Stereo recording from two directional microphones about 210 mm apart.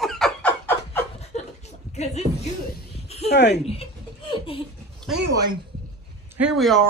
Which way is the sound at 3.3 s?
55° left (ahead or behind).